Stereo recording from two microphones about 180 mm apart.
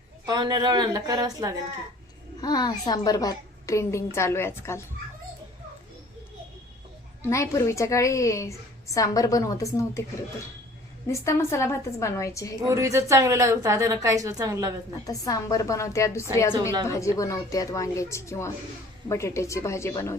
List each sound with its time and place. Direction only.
0.3 s a woman's voice: 20° right (ahead or behind)
2.4 s a woman's voice: 20° left (ahead or behind)
7.2 s a woman's voice: 15° left (ahead or behind)
11.1 s a woman's voice: 15° left (ahead or behind)
12.6 s a woman's voice: 15° right (ahead or behind)
15.0 s a woman's voice: 20° left (ahead or behind)